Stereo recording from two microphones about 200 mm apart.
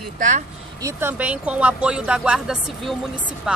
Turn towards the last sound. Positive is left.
turn(degrees=-5)  # may be behind; listen again after turning